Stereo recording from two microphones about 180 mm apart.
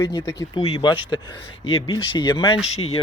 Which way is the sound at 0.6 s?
25° left (ahead or behind).